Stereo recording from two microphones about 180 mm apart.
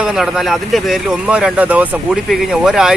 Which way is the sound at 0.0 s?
5° right (ahead or behind).